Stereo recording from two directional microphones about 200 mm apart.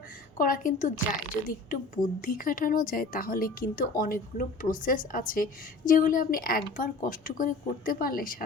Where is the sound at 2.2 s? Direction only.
45° left (ahead or behind).